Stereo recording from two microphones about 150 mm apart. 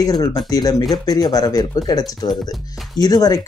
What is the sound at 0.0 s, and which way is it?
Speech, 25° left (ahead or behind).